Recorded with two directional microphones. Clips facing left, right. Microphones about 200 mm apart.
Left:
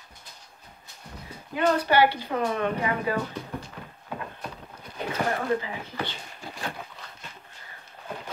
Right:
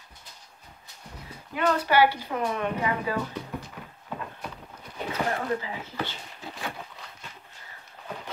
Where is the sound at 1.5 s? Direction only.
30° left (ahead or behind).